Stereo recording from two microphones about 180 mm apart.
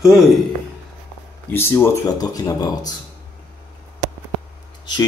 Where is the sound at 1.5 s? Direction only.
10° left (ahead or behind).